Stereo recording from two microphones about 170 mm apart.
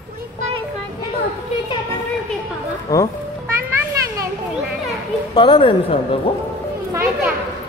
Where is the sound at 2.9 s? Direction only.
15° left (ahead or behind).